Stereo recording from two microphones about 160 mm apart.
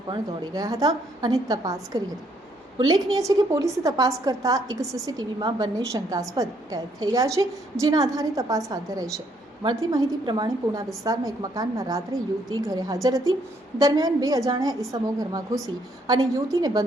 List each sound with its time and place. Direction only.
0.1 s a woman's voice: 25° right (ahead or behind)